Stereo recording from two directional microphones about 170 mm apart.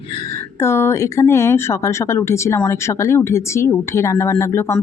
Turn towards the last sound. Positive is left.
turn(degrees=15)  # may be behind; listen again after turning